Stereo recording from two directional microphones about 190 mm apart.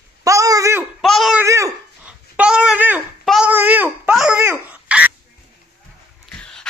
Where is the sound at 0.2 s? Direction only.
15° right (ahead or behind).